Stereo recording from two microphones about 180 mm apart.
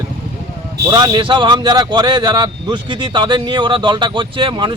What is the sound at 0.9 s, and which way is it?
A man's voice, 25° right (ahead or behind).